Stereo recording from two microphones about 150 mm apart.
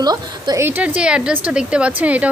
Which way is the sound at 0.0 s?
25° right (ahead or behind).